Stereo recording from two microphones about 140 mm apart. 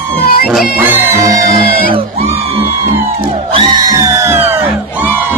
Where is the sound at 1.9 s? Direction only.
45° right (ahead or behind).